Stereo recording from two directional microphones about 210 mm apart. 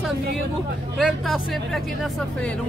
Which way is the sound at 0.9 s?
Centre (ahead or behind).